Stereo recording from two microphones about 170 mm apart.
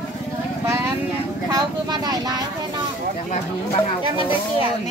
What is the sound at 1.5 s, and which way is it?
Speech, 20° right (ahead or behind).